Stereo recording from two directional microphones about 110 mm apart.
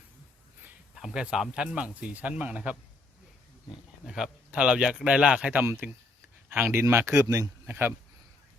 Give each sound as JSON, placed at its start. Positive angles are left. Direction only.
{"t": 0.9, "sound": "speech", "side_deg": -5}
{"t": 4.0, "sound": "speech", "side_deg": -5}
{"t": 5.6, "sound": "speech", "side_deg": -25}